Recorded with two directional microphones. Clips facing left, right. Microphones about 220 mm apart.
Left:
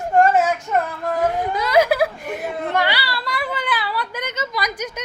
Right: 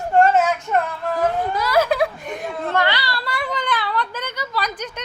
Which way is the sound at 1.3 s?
15° left (ahead or behind).